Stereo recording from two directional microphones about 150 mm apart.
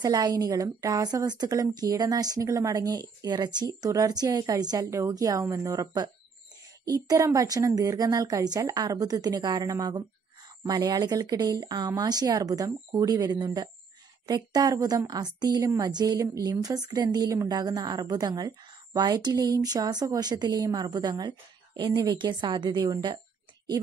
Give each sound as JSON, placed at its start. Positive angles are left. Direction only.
{"t": 0.0, "sound": "a woman's voice", "side_deg": -25}